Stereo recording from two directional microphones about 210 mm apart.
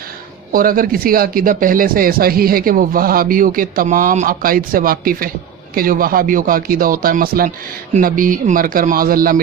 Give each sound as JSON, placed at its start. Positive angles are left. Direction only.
{"t": 0.5, "sound": "speech", "side_deg": -40}